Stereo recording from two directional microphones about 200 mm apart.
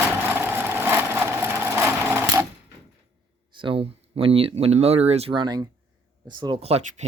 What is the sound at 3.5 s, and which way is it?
Speech, 25° right (ahead or behind).